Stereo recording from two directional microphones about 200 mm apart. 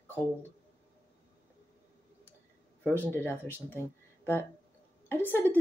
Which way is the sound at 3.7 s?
10° left (ahead or behind).